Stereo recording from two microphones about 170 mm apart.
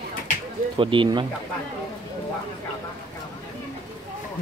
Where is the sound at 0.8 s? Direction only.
30° right (ahead or behind).